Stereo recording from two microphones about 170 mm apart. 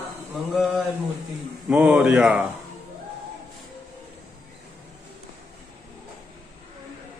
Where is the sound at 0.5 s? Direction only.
Centre (ahead or behind).